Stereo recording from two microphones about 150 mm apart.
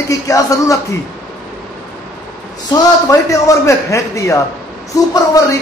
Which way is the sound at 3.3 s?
20° left (ahead or behind).